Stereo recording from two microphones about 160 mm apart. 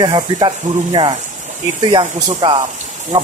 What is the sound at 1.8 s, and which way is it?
Speech, 30° right (ahead or behind).